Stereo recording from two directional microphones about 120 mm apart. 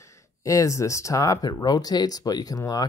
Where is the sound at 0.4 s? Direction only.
25° left (ahead or behind).